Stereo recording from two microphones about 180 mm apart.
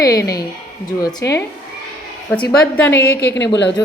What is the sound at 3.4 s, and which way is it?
Speech, 75° left (ahead or behind).